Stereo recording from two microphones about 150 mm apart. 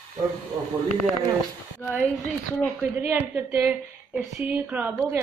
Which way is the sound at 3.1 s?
15° right (ahead or behind).